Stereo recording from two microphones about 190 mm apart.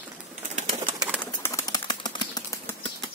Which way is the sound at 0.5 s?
35° right (ahead or behind).